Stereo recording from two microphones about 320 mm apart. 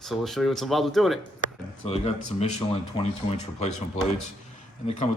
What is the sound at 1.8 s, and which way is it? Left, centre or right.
Speech, centre.